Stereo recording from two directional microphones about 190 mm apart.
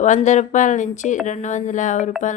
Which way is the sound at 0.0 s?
40° left (ahead or behind).